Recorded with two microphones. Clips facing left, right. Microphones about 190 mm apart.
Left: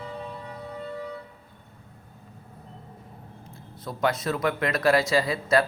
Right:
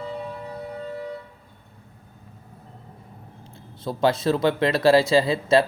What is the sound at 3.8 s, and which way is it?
Speech, 30° right (ahead or behind).